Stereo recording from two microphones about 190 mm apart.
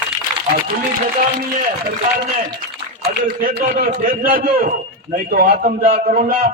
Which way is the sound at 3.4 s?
50° right (ahead or behind).